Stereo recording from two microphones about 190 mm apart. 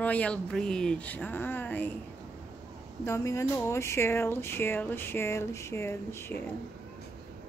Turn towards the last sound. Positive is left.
turn(degrees=15)  # may be behind; listen again after turning